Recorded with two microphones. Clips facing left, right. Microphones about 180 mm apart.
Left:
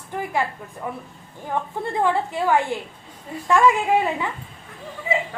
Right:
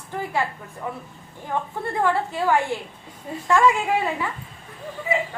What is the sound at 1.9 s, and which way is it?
A woman's voice, 15° left (ahead or behind).